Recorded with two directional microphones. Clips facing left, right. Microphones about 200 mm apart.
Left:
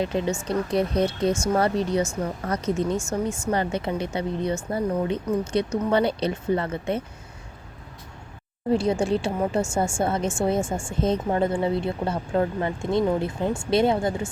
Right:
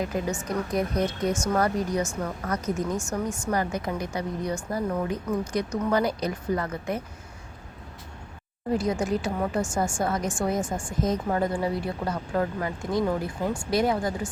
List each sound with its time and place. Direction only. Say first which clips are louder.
0.0 s speech: left 3 dB; 25° left (ahead or behind)
8.7 s speech: left 3 dB; 30° left (ahead or behind)